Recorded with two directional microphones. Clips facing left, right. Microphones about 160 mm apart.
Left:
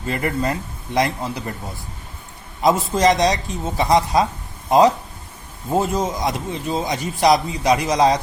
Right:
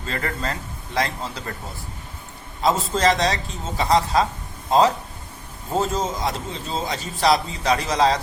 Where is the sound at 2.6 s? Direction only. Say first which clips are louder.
Left 3 dB; 15° left (ahead or behind).